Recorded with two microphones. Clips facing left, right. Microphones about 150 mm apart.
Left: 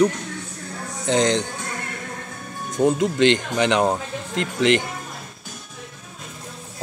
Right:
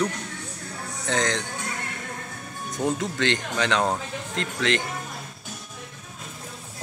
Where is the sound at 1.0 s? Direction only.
20° left (ahead or behind).